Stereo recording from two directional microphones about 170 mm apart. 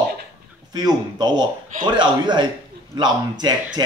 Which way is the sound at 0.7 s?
25° right (ahead or behind).